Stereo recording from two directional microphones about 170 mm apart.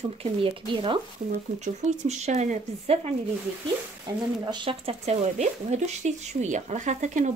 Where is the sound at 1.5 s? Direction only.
45° right (ahead or behind).